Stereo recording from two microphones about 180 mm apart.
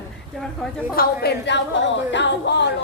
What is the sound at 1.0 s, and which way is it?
A woman's voice, 65° left (ahead or behind).